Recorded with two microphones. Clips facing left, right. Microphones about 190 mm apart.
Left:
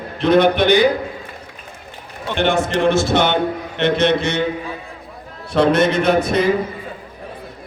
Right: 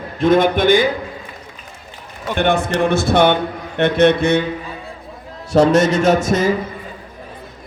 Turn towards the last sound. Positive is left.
turn(degrees=-45)  # may be behind; listen again after turning